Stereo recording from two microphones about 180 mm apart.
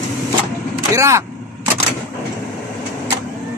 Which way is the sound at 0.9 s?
15° right (ahead or behind).